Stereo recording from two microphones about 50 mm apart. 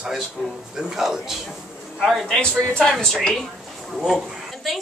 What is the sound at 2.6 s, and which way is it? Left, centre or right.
Speech, left.